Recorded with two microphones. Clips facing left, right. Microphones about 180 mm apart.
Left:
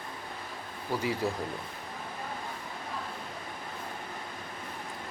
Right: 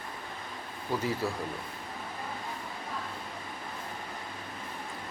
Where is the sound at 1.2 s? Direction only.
15° left (ahead or behind).